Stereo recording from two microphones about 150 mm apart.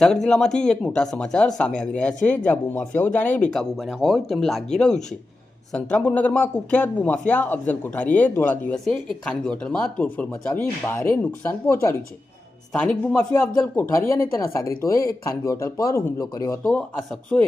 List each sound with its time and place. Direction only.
0.0 s speech: 5° left (ahead or behind); by 16.7 s 25° left (ahead or behind)